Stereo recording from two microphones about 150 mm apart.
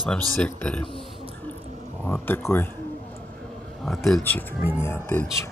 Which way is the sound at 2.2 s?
15° left (ahead or behind).